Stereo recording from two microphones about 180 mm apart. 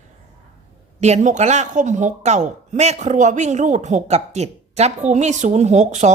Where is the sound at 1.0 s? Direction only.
40° right (ahead or behind).